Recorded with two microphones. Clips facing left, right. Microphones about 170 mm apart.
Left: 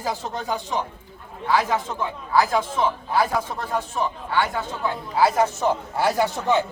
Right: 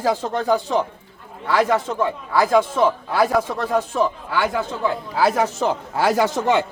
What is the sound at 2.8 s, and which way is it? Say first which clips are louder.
Speech: right 4 dB; 90° right.